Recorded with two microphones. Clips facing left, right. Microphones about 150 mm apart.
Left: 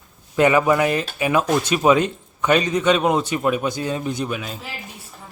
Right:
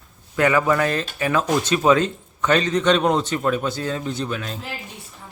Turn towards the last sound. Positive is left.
turn(degrees=5)  # may be behind; listen again after turning